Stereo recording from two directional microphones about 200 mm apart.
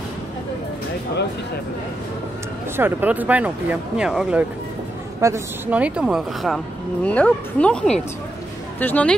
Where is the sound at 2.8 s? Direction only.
10° right (ahead or behind).